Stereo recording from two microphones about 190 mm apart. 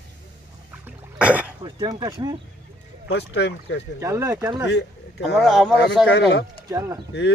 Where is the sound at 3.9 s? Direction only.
15° right (ahead or behind).